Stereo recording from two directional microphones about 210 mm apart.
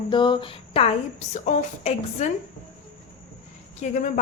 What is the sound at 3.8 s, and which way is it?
Speech, 35° left (ahead or behind).